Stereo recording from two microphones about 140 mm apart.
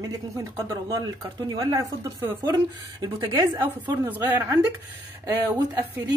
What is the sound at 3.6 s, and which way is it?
A woman's voice, 15° right (ahead or behind).